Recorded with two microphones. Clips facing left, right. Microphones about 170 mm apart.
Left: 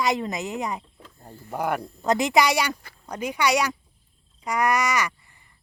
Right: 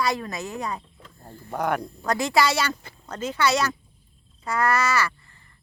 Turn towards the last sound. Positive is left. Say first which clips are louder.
# right 1 dB
turn(degrees=15)  # may be behind; listen again after turning